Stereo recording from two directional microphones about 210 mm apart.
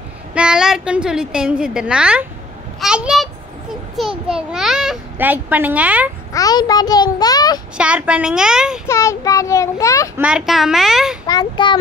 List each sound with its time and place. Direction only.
0.3 s a woman's voice: 5° right (ahead or behind)
6.3 s a child's voice: 15° left (ahead or behind)
7.7 s a woman's voice: 5° right (ahead or behind)
8.8 s a child's voice: 15° left (ahead or behind)
10.1 s a woman's voice: 5° right (ahead or behind)
11.2 s a child's voice: 20° left (ahead or behind)